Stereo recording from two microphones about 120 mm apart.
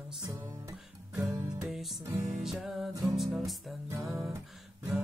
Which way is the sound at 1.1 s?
25° right (ahead or behind).